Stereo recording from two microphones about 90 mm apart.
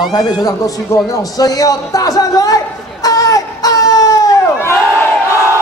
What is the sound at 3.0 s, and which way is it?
Wail, 40° left (ahead or behind).